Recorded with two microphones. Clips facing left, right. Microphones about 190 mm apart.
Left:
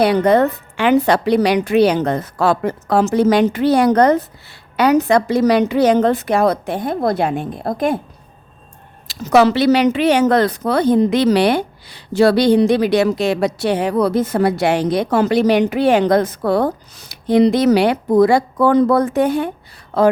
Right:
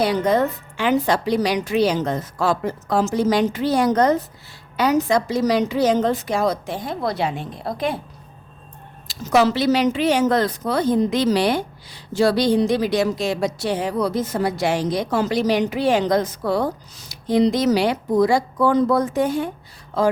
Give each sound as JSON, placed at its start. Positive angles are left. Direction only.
{"t": 0.0, "sound": "a woman's voice", "side_deg": 65}
{"t": 9.0, "sound": "a woman's voice", "side_deg": 65}